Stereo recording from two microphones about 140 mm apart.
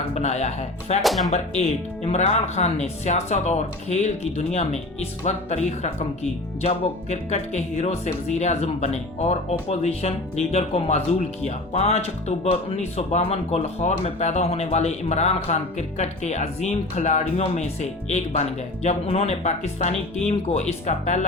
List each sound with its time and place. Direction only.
0.1 s speech: 55° left (ahead or behind)
1.0 s speech: centre (ahead or behind)
1.3 s speech: 50° left (ahead or behind)